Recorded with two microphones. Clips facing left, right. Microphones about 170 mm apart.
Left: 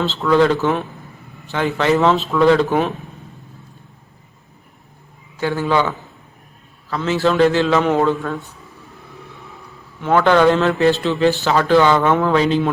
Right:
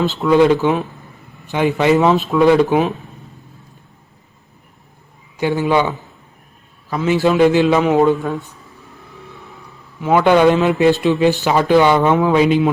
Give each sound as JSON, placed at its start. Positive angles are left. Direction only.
{"t": 0.0, "sound": "a man's voice", "side_deg": -15}
{"t": 5.4, "sound": "a man's voice", "side_deg": -15}
{"t": 6.9, "sound": "a man's voice", "side_deg": -15}
{"t": 10.0, "sound": "a man's voice", "side_deg": -10}